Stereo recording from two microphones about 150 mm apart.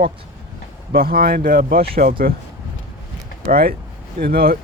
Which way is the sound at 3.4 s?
80° right.